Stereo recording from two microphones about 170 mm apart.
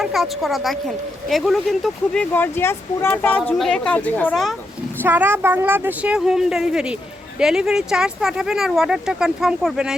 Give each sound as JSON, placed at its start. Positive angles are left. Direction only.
{"t": 0.0, "sound": "speech", "side_deg": 0}
{"t": 2.3, "sound": "speech", "side_deg": 15}
{"t": 5.0, "sound": "speech", "side_deg": -10}